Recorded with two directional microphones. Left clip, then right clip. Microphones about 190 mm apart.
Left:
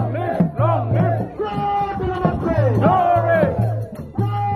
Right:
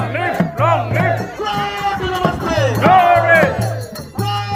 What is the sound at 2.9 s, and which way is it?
Music, centre (ahead or behind).